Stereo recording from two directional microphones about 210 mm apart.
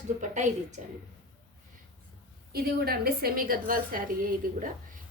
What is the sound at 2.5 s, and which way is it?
A woman's voice, 45° right (ahead or behind).